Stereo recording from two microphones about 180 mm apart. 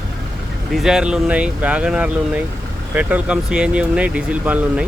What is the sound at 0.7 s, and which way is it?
Speech, 5° right (ahead or behind).